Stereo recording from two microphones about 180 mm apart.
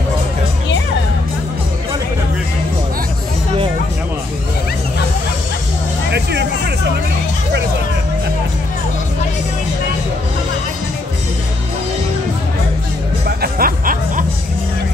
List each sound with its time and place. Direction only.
13.4 s music: 55° right (ahead or behind)